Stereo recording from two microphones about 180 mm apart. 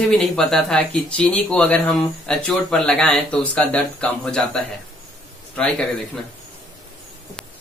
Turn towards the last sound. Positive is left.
turn(degrees=5)  # may be behind; listen again after turning